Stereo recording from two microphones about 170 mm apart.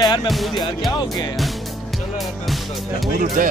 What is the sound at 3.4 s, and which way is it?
Speech, 50° right (ahead or behind).